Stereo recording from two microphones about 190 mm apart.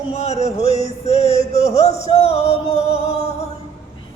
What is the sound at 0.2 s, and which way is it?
Music, 35° left (ahead or behind).